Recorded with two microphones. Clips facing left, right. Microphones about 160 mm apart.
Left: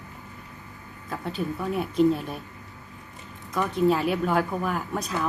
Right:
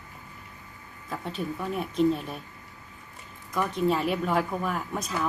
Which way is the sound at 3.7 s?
Centre (ahead or behind).